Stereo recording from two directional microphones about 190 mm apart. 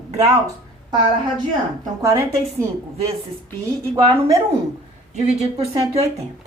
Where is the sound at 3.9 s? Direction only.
15° right (ahead or behind).